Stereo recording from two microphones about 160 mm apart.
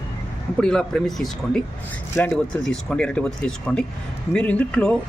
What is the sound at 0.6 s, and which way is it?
Speech, 5° left (ahead or behind).